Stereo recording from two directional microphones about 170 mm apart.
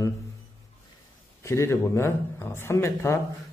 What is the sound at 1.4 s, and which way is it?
Speech, 15° left (ahead or behind).